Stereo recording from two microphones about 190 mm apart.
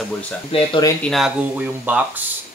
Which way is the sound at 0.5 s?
20° left (ahead or behind).